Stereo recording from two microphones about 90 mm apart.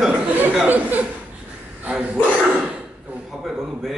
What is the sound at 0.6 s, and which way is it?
Chuckle, 20° right (ahead or behind).